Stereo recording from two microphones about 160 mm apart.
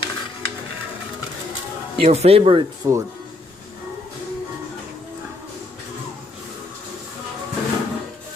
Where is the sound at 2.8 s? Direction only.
20° right (ahead or behind).